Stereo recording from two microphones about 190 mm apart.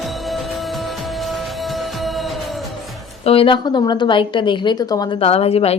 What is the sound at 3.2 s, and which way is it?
A woman's voice, 30° left (ahead or behind).